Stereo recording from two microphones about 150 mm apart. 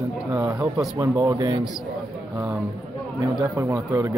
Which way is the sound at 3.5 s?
15° right (ahead or behind).